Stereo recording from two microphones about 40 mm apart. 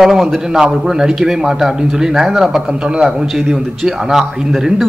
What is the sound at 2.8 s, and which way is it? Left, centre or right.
Speech, right.